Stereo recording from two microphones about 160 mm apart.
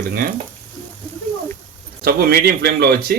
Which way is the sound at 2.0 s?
75° right (ahead or behind).